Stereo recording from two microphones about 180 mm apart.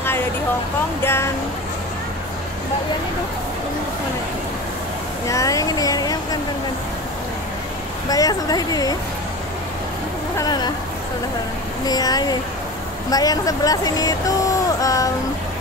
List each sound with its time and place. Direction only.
1.0 s speech: 15° left (ahead or behind)
5.3 s speech: 20° left (ahead or behind)
8.1 s speech: 20° left (ahead or behind)
10.3 s speech: 20° left (ahead or behind)
11.8 s speech: 20° left (ahead or behind)